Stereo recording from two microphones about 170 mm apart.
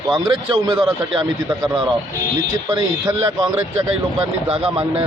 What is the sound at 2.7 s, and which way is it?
Speech, 30° right (ahead or behind).